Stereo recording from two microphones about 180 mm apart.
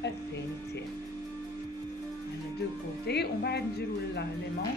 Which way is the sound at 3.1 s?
65° left (ahead or behind).